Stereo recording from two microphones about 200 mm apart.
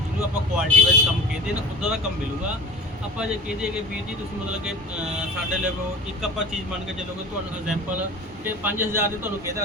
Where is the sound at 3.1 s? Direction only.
5° right (ahead or behind).